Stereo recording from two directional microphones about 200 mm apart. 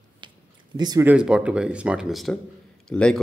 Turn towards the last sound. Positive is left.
turn(degrees=5)  # may be behind; listen again after turning